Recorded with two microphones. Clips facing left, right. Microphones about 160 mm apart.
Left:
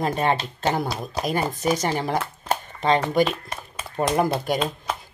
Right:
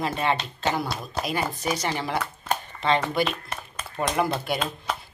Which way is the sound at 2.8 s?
40° left (ahead or behind).